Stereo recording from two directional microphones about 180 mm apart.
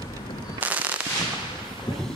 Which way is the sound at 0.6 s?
10° right (ahead or behind).